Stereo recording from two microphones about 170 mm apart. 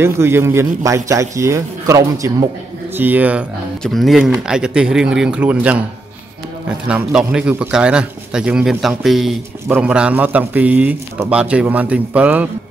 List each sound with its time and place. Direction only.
0.0 s a man's voice: 15° right (ahead or behind)
6.9 s a man's voice: 5° right (ahead or behind)